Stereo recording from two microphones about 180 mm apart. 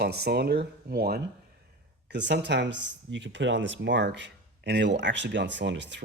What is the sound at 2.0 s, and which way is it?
Speech, 75° right (ahead or behind).